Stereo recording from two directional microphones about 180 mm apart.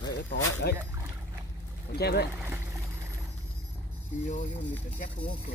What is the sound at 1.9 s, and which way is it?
Speech, 65° left (ahead or behind).